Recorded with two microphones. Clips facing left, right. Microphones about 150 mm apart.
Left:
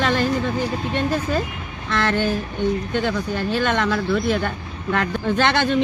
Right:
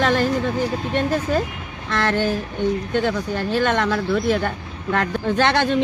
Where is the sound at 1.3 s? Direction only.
45° right (ahead or behind).